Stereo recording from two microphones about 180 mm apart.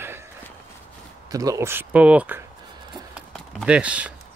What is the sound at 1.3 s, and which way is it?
Speech, 20° right (ahead or behind).